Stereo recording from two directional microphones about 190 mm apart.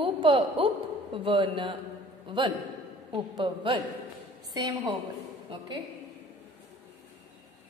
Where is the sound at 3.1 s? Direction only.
25° right (ahead or behind).